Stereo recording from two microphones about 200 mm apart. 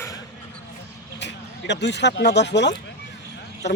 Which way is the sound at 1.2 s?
60° left (ahead or behind).